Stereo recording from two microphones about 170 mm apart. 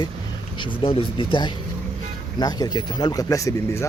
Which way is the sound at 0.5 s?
30° left (ahead or behind).